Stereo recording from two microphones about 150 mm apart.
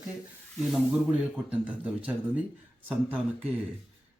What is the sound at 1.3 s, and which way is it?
Speech, 10° right (ahead or behind).